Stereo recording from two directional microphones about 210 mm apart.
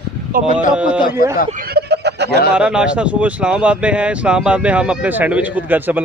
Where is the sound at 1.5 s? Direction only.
45° right (ahead or behind).